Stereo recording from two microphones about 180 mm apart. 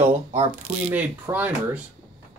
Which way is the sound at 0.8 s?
10° right (ahead or behind).